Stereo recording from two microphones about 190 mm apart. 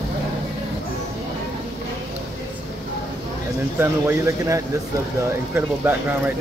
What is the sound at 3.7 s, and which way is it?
Speech, 15° right (ahead or behind).